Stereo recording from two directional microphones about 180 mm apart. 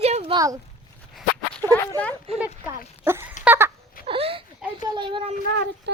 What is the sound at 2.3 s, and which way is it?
Speech, 35° right (ahead or behind).